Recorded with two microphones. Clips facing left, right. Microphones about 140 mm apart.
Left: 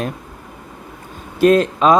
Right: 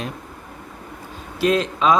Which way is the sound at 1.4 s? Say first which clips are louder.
Left 6 dB; 50° left (ahead or behind).